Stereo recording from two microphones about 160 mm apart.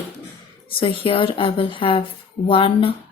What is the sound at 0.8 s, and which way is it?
Speech, 35° left (ahead or behind).